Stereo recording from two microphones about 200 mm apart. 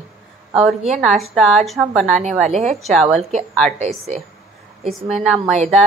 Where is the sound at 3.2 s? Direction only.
35° right (ahead or behind).